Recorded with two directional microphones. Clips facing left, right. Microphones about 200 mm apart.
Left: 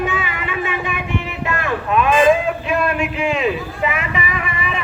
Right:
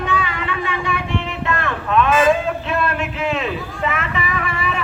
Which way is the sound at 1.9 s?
10° left (ahead or behind).